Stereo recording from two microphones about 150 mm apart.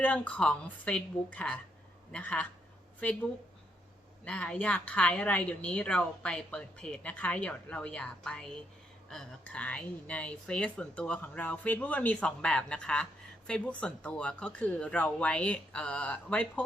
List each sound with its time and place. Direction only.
0.0 s a woman's voice: 10° left (ahead or behind)
4.3 s a woman's voice: 10° left (ahead or behind)